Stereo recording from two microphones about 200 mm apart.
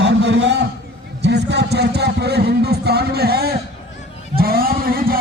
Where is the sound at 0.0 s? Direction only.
60° right (ahead or behind).